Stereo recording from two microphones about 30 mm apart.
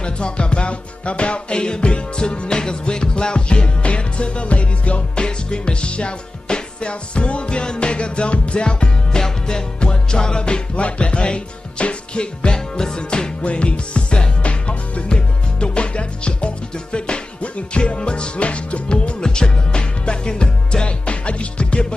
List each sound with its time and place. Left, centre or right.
0.0 s music: left
5.2 s music: left
12.5 s music: left
13.4 s music: left
17.4 s music: left